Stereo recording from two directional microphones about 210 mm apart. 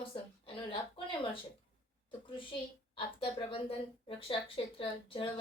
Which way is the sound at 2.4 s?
25° left (ahead or behind).